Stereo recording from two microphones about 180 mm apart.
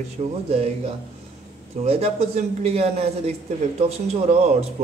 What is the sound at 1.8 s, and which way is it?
A man's voice, 35° right (ahead or behind).